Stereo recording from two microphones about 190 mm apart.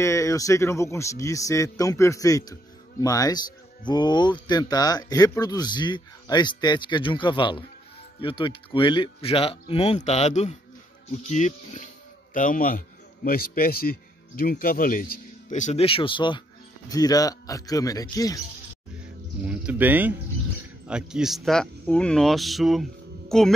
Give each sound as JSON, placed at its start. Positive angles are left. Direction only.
{"t": 0.0, "sound": "a man's voice", "side_deg": 15}
{"t": 19.4, "sound": "a sound", "side_deg": -5}
{"t": 20.8, "sound": "speech", "side_deg": -5}